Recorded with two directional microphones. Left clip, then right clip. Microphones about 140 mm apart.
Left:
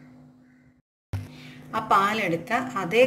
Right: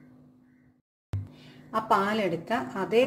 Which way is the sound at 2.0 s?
90° right.